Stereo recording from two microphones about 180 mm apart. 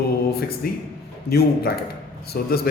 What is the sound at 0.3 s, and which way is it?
A man's voice, 60° left (ahead or behind).